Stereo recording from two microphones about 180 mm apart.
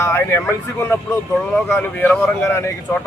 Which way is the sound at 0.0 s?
15° left (ahead or behind).